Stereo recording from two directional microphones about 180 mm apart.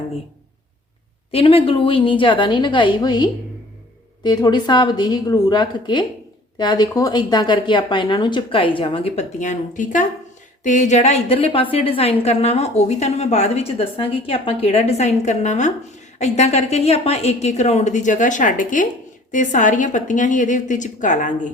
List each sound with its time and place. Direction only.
1.3 s a woman's voice: 30° left (ahead or behind)